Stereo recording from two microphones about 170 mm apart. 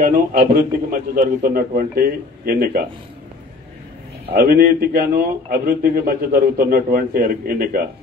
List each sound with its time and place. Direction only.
0.0 s a man's voice: 60° right (ahead or behind)
4.3 s a man's voice: 65° right (ahead or behind)